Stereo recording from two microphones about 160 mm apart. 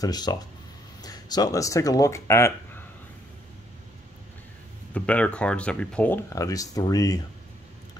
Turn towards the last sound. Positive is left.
turn(degrees=25)  # may be behind; listen again after turning